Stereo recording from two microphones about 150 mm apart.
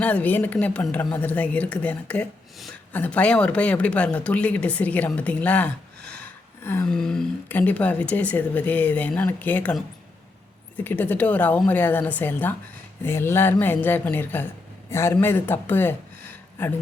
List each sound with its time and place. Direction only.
0.0 s speech: 10° left (ahead or behind)
10.8 s speech: 10° left (ahead or behind)